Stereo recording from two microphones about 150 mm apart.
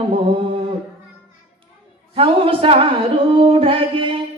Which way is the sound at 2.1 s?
35° right (ahead or behind).